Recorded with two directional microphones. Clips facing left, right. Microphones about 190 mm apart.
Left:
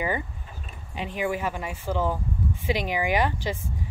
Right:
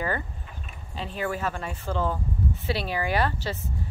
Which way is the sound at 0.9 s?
15° left (ahead or behind).